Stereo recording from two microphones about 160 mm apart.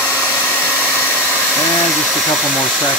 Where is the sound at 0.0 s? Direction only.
10° left (ahead or behind).